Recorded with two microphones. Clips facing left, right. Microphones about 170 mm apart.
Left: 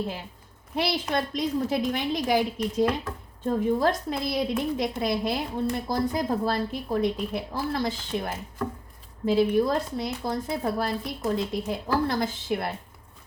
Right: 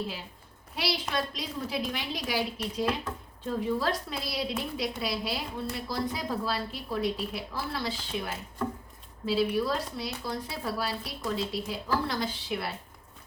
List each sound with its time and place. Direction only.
0.8 s a woman's voice: 50° left (ahead or behind)